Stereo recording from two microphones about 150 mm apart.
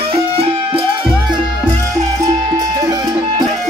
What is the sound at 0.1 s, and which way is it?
Music, 35° right (ahead or behind).